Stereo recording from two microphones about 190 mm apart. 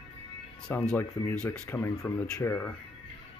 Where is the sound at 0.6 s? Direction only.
5° left (ahead or behind).